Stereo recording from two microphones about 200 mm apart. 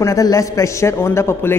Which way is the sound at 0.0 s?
15° left (ahead or behind).